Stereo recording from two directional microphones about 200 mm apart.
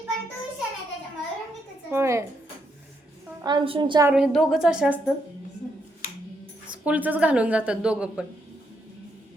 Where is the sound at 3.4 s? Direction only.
25° right (ahead or behind).